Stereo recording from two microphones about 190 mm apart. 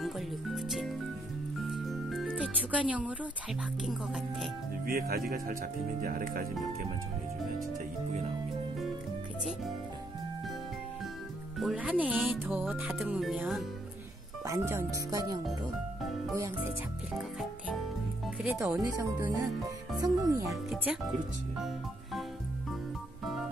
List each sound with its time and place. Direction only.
0.0 s music: centre (ahead or behind)
4.8 s speech: 50° right (ahead or behind)
9.4 s music: centre (ahead or behind)
11.5 s speech: 5° right (ahead or behind)
12.5 s music: 10° right (ahead or behind)
14.4 s speech: 15° right (ahead or behind)
16.3 s speech: 15° right (ahead or behind)
18.2 s speech: 10° right (ahead or behind)
20.7 s music: centre (ahead or behind)
23.2 s organ: centre (ahead or behind)